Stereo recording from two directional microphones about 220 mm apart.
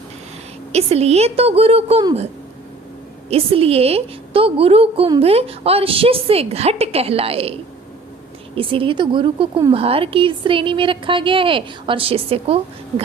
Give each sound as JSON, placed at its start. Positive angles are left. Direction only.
{"t": 0.7, "sound": "a woman's voice", "side_deg": -30}
{"t": 3.2, "sound": "a woman's voice", "side_deg": -25}
{"t": 8.5, "sound": "a woman's voice", "side_deg": -25}